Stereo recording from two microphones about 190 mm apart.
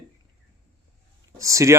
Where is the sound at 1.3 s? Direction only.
15° right (ahead or behind).